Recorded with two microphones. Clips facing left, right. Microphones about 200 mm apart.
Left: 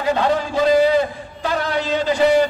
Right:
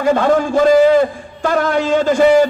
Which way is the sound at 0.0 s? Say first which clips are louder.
Right 5 dB; 50° right (ahead or behind).